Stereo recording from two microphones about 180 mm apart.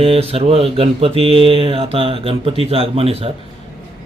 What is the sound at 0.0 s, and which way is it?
Speech, 35° right (ahead or behind).